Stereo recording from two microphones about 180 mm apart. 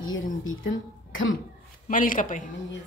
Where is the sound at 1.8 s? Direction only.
50° left (ahead or behind).